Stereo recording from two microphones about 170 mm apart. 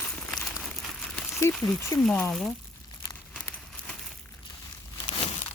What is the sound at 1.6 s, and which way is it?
Speech, 5° left (ahead or behind).